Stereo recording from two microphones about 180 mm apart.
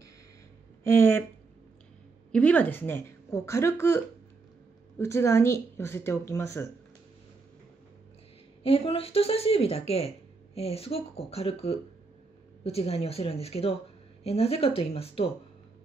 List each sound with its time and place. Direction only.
0.8 s speech: 15° left (ahead or behind)
2.3 s speech: 5° left (ahead or behind)
8.6 s speech: 30° left (ahead or behind)